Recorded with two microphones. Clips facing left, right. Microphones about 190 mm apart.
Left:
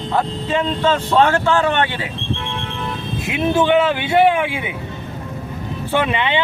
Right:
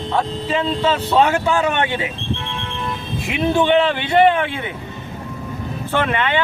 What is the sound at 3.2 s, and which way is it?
Speech, 5° left (ahead or behind).